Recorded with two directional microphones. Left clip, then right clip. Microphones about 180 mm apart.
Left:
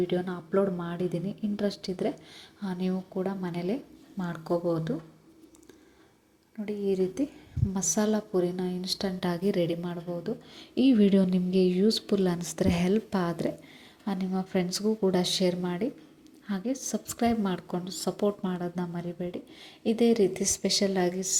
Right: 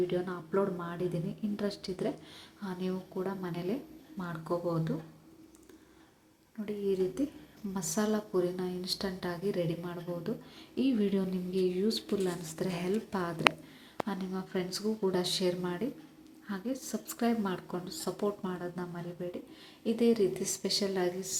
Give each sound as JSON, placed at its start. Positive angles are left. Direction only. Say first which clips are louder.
{"t": 0.1, "sound": "a woman's voice", "louder": "left 4 dB", "side_deg": 25}
{"t": 6.7, "sound": "a woman's voice", "louder": "left 3 dB", "side_deg": 20}
{"t": 9.2, "sound": "a woman's voice", "louder": "left 7 dB", "side_deg": 40}
{"t": 9.9, "sound": "speech", "louder": "left 4 dB", "side_deg": 15}
{"t": 10.8, "sound": "a woman's voice", "louder": "left 8 dB", "side_deg": 35}